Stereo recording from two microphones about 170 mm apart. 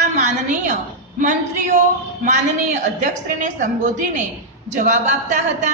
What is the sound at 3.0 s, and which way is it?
Speech, 50° right (ahead or behind).